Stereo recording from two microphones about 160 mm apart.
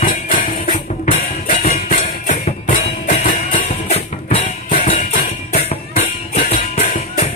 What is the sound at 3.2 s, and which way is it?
Music, 35° left (ahead or behind).